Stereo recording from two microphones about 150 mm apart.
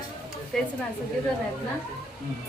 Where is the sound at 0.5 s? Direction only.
5° left (ahead or behind).